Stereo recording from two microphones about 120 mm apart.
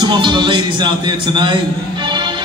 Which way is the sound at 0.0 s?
40° right (ahead or behind).